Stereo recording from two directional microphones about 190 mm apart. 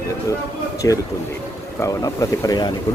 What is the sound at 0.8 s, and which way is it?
Speech, 15° left (ahead or behind).